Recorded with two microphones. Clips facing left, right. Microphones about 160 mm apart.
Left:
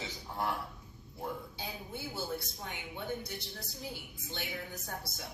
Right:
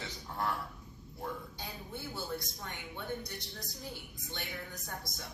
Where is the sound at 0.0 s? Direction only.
15° left (ahead or behind).